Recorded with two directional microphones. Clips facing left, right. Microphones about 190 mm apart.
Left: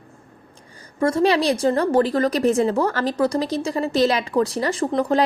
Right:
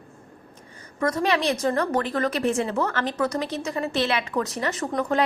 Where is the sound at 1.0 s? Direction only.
30° left (ahead or behind).